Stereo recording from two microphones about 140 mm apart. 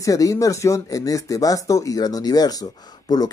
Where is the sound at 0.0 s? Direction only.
25° left (ahead or behind).